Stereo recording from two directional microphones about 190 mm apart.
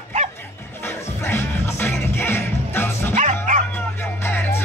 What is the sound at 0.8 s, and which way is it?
Music, 15° left (ahead or behind).